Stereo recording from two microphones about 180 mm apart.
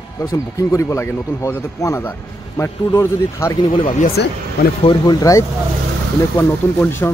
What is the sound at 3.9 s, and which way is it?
Speech, 55° left (ahead or behind).